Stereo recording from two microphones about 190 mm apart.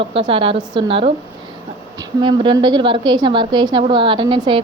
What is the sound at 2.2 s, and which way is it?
A woman's voice, 25° right (ahead or behind).